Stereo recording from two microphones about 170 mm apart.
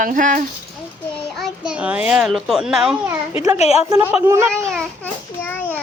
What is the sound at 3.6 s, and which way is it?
Speech, 40° left (ahead or behind).